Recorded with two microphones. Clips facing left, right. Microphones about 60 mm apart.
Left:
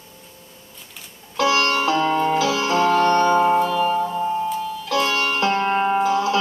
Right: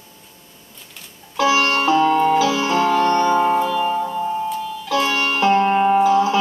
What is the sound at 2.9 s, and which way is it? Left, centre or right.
Music, centre.